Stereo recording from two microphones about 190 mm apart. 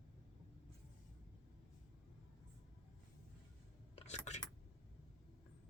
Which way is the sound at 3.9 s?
35° left (ahead or behind).